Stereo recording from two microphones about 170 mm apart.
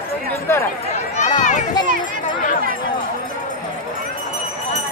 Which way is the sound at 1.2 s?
45° left (ahead or behind).